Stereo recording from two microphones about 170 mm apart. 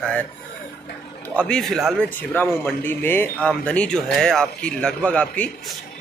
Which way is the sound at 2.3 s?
10° left (ahead or behind).